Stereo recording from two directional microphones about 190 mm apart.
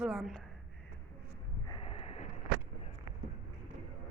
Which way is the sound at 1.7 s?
30° left (ahead or behind).